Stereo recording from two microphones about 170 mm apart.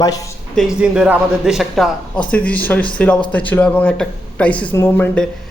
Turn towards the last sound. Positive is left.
turn(degrees=10)  # may be behind; listen again after turning